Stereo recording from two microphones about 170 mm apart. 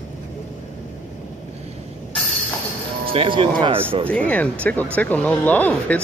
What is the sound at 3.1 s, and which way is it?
Speech, 30° right (ahead or behind).